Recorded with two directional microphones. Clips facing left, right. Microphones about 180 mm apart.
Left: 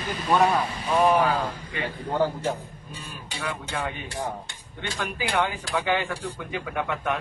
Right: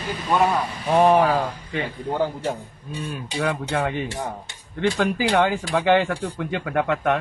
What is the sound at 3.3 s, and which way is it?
Speech, 70° right (ahead or behind).